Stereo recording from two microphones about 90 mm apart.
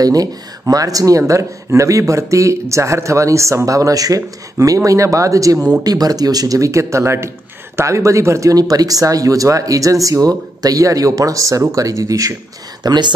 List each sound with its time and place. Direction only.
0.0 s speech: 45° right (ahead or behind)
12.8 s speech: 55° right (ahead or behind)